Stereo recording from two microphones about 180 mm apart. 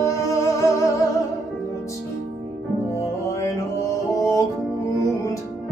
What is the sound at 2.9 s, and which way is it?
Music, 15° left (ahead or behind).